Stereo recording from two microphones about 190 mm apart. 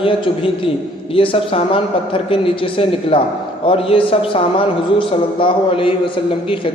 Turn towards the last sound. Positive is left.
turn(degrees=25)  # may be behind; listen again after turning